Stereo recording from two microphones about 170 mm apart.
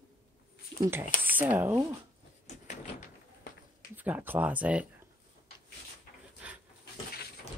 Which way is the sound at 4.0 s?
10° right (ahead or behind).